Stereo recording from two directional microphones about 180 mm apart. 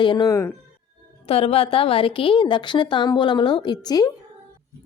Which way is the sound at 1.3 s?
30° left (ahead or behind).